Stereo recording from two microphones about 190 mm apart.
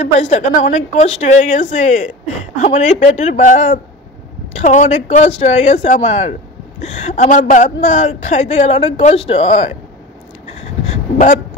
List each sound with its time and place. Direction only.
0.0 s speech: 40° left (ahead or behind)